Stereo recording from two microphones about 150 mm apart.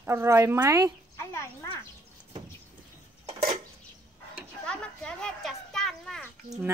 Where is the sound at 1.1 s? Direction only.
20° left (ahead or behind).